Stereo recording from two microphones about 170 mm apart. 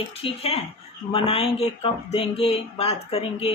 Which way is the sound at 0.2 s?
35° left (ahead or behind).